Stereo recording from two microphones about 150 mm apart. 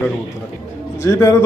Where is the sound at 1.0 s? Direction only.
20° left (ahead or behind).